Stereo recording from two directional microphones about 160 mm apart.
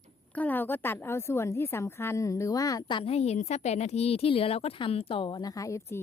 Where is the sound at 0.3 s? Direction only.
10° left (ahead or behind).